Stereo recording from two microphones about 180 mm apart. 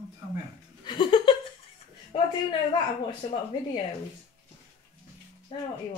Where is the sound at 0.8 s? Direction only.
25° left (ahead or behind).